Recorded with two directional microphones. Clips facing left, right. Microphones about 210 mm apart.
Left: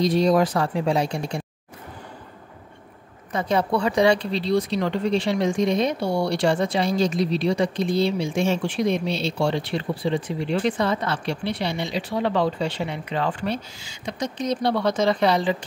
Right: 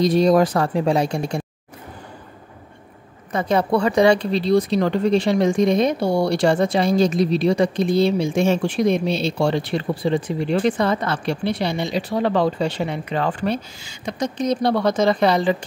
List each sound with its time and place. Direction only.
0.0 s speech: 45° right (ahead or behind)
3.3 s speech: 50° right (ahead or behind)